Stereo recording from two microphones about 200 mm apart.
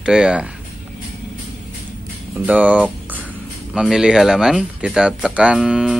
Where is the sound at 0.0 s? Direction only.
5° right (ahead or behind).